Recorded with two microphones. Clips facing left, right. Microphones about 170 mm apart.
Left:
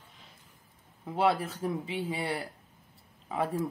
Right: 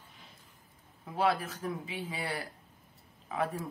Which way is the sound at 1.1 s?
30° left (ahead or behind).